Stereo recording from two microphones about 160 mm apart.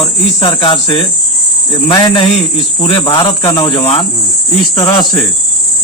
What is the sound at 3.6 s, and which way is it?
Cricket, 40° left (ahead or behind).